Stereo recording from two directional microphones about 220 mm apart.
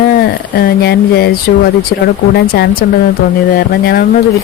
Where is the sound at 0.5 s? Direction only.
45° left (ahead or behind).